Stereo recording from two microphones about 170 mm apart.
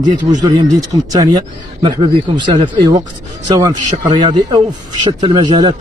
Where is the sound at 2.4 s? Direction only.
25° right (ahead or behind).